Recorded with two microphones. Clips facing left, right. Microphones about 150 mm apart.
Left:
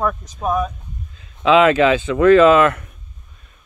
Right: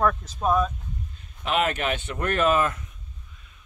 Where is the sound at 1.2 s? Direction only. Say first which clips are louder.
Left 12 dB; 90° left.